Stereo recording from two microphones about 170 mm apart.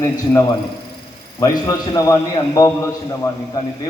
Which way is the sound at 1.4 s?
20° left (ahead or behind).